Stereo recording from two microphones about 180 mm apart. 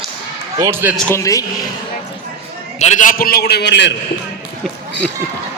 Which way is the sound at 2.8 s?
45° left (ahead or behind).